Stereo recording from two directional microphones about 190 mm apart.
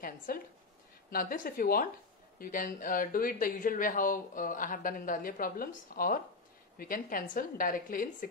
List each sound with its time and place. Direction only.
0.3 s speech: 50° left (ahead or behind)